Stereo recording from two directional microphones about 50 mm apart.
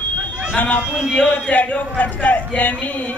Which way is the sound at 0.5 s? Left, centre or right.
Left.